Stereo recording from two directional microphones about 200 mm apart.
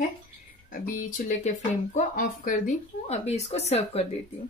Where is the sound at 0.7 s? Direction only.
40° left (ahead or behind).